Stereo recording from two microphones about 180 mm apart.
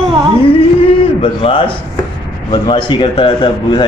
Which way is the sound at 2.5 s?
25° left (ahead or behind).